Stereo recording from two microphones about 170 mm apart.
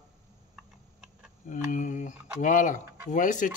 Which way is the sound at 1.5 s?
50° left (ahead or behind).